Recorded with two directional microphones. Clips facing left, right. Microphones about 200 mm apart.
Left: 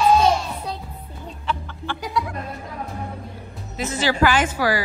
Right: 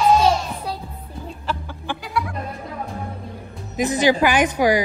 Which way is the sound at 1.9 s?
15° right (ahead or behind).